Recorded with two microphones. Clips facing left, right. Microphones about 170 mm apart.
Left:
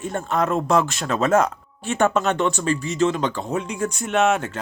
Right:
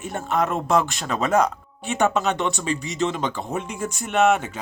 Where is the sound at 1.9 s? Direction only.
15° right (ahead or behind).